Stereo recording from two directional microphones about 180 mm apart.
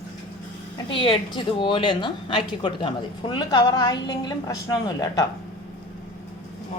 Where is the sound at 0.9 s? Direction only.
30° left (ahead or behind).